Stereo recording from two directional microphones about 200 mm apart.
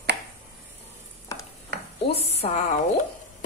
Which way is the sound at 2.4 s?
35° left (ahead or behind).